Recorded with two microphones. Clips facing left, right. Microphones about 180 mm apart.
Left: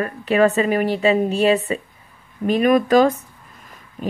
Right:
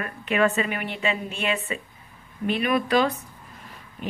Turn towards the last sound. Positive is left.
turn(degrees=45)  # may be behind; listen again after turning